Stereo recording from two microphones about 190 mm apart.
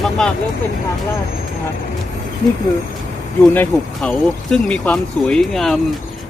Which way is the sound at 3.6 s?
5° left (ahead or behind).